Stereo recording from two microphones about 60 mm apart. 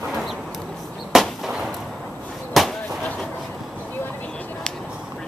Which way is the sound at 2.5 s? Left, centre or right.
Centre.